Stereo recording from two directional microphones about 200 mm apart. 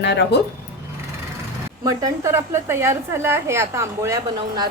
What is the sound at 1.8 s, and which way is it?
Speech, 15° right (ahead or behind).